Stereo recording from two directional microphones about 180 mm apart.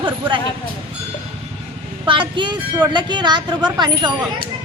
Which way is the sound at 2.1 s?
25° right (ahead or behind).